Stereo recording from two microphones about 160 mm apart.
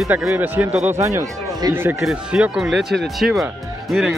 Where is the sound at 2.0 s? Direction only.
5° right (ahead or behind).